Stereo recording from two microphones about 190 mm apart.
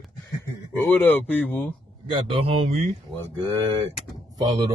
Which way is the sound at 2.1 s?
30° right (ahead or behind).